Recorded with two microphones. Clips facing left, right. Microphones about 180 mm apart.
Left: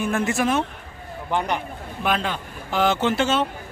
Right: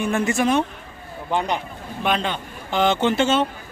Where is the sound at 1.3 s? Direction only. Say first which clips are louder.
Right 1 dB; 15° right (ahead or behind).